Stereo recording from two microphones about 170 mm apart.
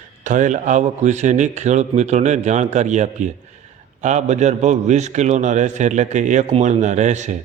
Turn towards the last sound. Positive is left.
turn(degrees=-45)  # may be behind; listen again after turning